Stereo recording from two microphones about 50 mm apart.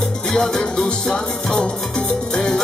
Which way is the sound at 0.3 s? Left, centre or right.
Centre.